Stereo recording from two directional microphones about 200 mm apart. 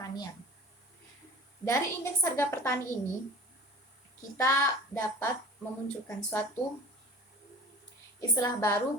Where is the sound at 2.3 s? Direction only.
10° left (ahead or behind).